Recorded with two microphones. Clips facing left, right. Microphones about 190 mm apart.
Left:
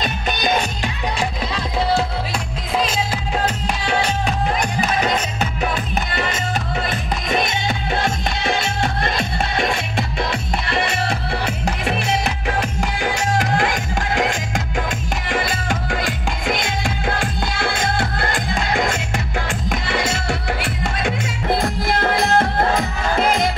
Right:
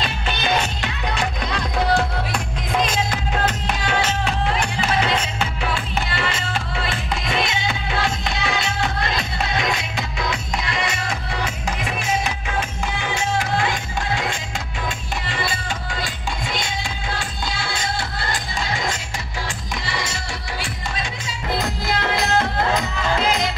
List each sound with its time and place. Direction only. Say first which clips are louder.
0.0 s music: left 3 dB; 45° left (ahead or behind)
5.0 s music: left 2 dB; 40° left (ahead or behind)
6.8 s music: left 2 dB; 50° left (ahead or behind); by 12.4 s 65° left (ahead or behind)
15.2 s music: left 5 dB; 50° left (ahead or behind)